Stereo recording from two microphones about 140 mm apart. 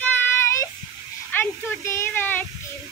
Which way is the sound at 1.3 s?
15° left (ahead or behind).